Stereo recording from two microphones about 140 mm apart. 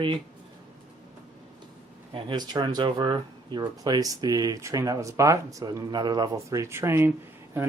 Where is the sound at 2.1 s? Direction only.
35° right (ahead or behind).